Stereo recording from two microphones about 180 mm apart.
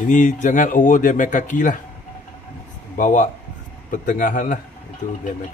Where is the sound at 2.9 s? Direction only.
45° left (ahead or behind).